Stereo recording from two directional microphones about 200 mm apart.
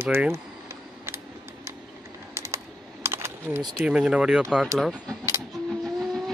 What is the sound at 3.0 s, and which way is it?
Typing, 10° right (ahead or behind).